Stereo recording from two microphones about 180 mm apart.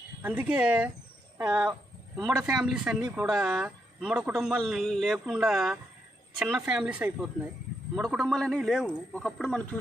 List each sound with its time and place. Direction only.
0.2 s a man's voice: 10° right (ahead or behind)